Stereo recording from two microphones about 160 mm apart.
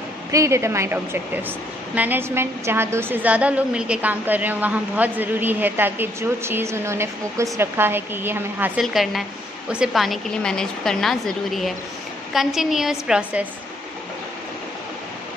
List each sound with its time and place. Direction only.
0.3 s a woman's voice: 20° right (ahead or behind)
8.8 s a woman's voice: centre (ahead or behind)